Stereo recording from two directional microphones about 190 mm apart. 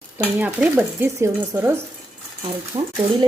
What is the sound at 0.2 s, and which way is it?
Speech, 10° right (ahead or behind).